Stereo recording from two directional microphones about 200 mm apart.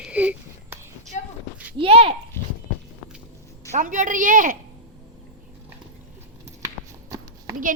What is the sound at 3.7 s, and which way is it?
Speech, 40° right (ahead or behind).